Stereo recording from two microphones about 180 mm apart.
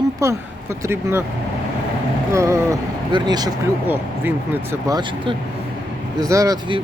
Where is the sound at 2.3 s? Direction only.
15° right (ahead or behind).